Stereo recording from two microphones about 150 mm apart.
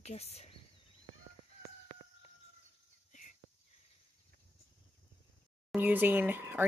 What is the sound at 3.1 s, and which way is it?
Whispering, 55° left (ahead or behind).